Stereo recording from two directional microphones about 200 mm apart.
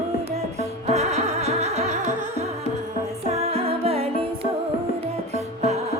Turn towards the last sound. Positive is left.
turn(degrees=-35)  # may be behind; listen again after turning